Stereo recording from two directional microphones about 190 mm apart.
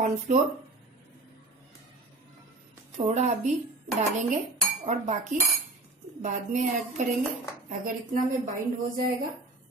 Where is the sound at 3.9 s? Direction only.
35° right (ahead or behind).